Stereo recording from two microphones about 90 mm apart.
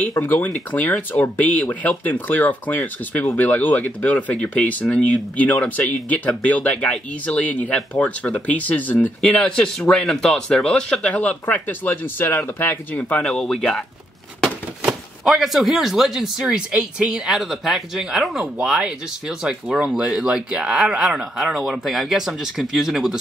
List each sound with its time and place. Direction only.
0.2 s speech: 20° left (ahead or behind)
13.2 s speech: 10° left (ahead or behind)
14.8 s speech: 5° right (ahead or behind)